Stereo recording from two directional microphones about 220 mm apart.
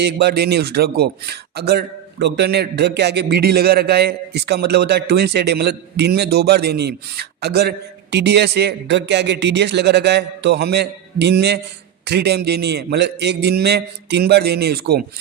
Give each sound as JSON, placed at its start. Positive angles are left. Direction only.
{"t": 0.0, "sound": "speech", "side_deg": -50}